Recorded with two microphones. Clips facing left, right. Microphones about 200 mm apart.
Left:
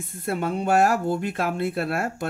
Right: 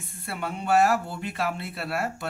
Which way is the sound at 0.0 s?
45° left (ahead or behind).